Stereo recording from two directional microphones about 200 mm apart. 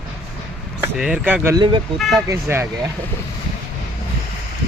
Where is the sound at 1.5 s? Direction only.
25° right (ahead or behind).